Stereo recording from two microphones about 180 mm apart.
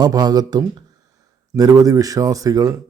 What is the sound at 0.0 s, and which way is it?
Speech, 20° right (ahead or behind).